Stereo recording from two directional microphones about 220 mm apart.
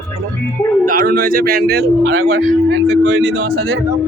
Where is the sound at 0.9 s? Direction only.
40° right (ahead or behind).